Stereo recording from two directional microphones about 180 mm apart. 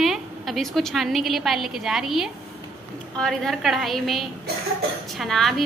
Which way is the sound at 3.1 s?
Centre (ahead or behind).